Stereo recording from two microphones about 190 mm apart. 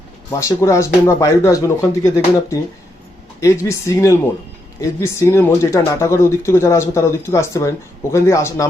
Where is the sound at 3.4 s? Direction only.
15° left (ahead or behind).